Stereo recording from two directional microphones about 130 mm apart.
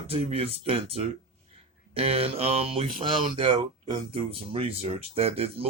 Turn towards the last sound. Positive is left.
turn(degrees=-50)  # may be behind; listen again after turning